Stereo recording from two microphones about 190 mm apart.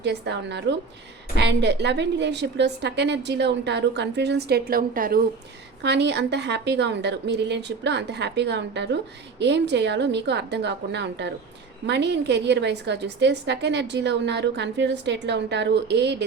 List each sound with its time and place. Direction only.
0.0 s a woman's voice: 65° right (ahead or behind); by 5.2 s 50° right (ahead or behind)
5.8 s a woman's voice: 65° right (ahead or behind)